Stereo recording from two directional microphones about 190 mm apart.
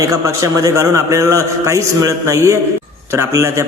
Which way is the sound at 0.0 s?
15° right (ahead or behind).